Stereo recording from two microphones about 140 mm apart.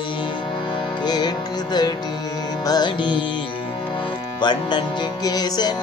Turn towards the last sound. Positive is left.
turn(degrees=30)  # may be behind; listen again after turning